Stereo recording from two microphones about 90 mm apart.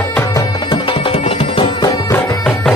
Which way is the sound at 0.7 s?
75° left (ahead or behind).